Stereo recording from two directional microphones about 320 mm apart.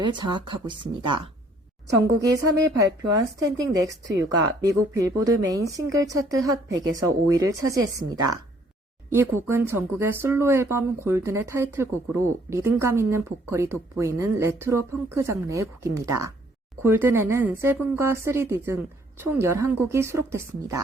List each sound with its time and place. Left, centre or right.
0.0 s speech: centre
2.7 s speech: centre